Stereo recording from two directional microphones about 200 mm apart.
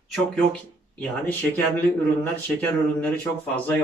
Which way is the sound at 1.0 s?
10° left (ahead or behind).